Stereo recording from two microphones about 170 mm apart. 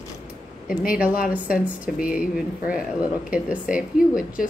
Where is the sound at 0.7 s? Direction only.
5° right (ahead or behind).